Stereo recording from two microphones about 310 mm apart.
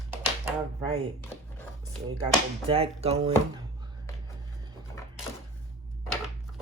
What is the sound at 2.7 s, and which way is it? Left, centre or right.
Speech, centre.